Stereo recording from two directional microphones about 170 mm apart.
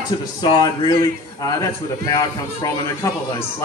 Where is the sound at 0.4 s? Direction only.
25° left (ahead or behind).